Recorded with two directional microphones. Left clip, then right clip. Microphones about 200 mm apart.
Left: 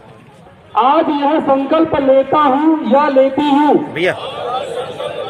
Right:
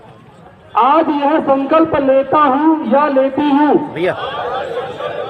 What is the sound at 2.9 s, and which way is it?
Speech, 35° left (ahead or behind).